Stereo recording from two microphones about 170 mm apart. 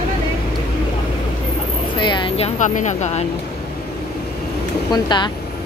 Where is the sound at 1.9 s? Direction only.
30° left (ahead or behind).